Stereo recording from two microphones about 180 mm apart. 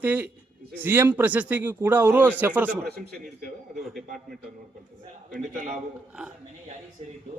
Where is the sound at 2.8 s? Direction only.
60° right (ahead or behind).